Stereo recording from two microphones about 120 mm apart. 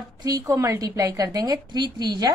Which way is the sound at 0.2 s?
30° right (ahead or behind).